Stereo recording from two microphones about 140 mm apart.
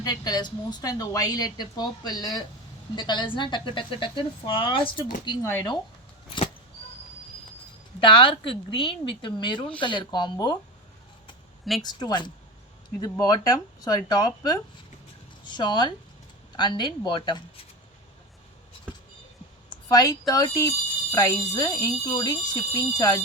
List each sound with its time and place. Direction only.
0.0 s a woman's voice: 30° left (ahead or behind)
5.4 s speech: 15° left (ahead or behind)
8.0 s speech: 40° left (ahead or behind)
11.8 s a woman's voice: 30° left (ahead or behind)
19.7 s a woman's voice: 25° left (ahead or behind)